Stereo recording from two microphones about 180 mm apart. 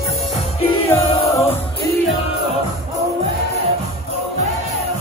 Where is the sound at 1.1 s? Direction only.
30° left (ahead or behind).